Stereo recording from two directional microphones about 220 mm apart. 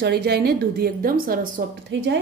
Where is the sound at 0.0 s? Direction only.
50° right (ahead or behind).